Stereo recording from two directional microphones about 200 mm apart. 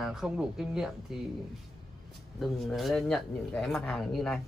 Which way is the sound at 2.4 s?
Centre (ahead or behind).